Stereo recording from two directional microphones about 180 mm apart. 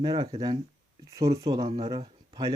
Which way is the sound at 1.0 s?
20° right (ahead or behind).